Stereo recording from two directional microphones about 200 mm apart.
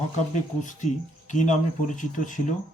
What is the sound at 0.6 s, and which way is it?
Speech, 40° left (ahead or behind).